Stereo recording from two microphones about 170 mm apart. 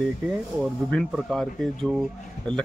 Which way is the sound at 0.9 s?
5° left (ahead or behind).